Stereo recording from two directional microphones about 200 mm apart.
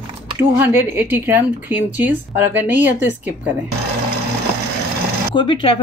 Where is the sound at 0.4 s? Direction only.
10° right (ahead or behind).